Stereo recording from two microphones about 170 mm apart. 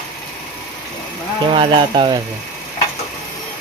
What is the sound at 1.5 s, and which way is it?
Speech, 30° right (ahead or behind).